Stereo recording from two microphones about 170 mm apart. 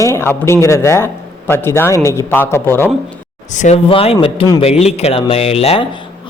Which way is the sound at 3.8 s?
30° left (ahead or behind).